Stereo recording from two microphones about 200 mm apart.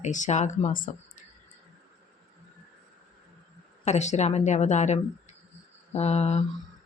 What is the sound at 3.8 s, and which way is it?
Speech, 35° left (ahead or behind).